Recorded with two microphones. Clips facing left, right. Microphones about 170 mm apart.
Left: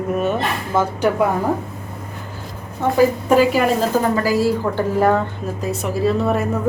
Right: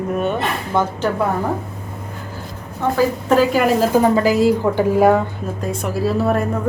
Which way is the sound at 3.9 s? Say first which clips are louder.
Right 3 dB; 20° right (ahead or behind).